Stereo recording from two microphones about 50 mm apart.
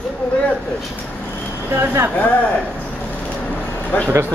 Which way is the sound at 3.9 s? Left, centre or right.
Left.